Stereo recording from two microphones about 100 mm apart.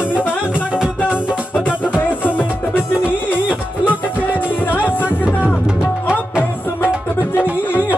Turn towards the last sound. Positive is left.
turn(degrees=-10)  # may be behind; listen again after turning